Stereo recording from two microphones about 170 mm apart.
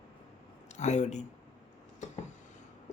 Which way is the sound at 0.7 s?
45° left (ahead or behind).